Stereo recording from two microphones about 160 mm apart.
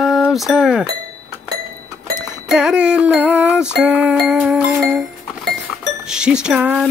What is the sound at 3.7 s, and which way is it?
Music, 10° right (ahead or behind).